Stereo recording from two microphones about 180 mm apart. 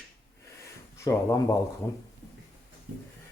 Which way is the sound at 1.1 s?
20° left (ahead or behind).